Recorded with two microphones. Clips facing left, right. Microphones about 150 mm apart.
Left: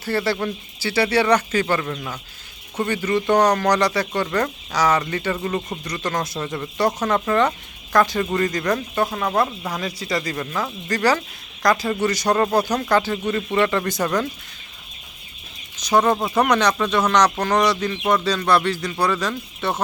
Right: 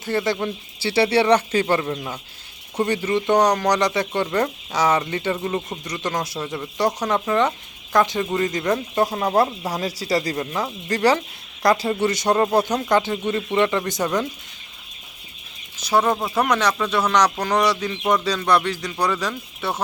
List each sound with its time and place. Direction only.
0.0 s speech: 20° right (ahead or behind)
0.8 s speech: 30° right (ahead or behind)
15.8 s speech: 5° right (ahead or behind)